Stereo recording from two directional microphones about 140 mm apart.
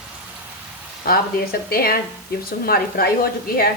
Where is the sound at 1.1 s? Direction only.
90° left.